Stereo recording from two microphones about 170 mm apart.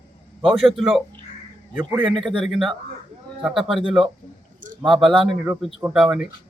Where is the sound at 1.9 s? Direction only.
30° right (ahead or behind).